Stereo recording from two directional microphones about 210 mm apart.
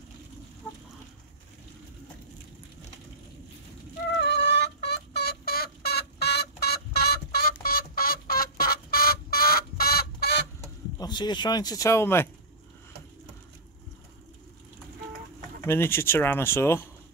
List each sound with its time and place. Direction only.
4.2 s fowl: 55° left (ahead or behind)
11.0 s speech: 20° left (ahead or behind)
15.6 s speech: 10° left (ahead or behind)